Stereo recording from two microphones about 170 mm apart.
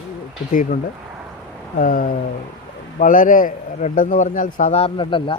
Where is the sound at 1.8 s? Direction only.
55° left (ahead or behind).